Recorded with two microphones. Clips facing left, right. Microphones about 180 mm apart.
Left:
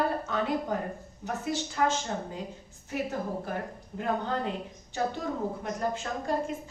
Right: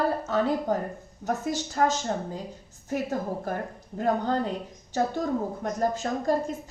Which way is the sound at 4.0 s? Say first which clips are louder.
Right 5 dB; 40° right (ahead or behind).